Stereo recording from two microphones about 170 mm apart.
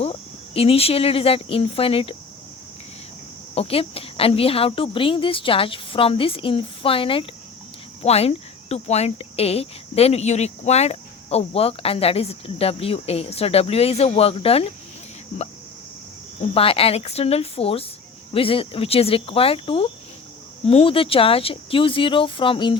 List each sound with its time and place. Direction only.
0.0 s speech: 35° left (ahead or behind)
3.5 s speech: 35° left (ahead or behind)
16.4 s speech: 35° left (ahead or behind)